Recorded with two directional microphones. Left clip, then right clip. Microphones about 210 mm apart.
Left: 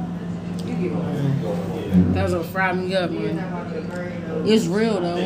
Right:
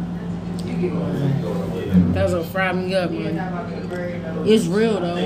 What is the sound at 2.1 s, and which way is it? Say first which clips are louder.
Speech: right 2 dB; 5° left (ahead or behind).